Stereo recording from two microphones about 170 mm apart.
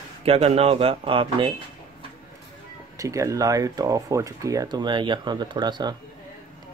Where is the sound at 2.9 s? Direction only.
20° right (ahead or behind).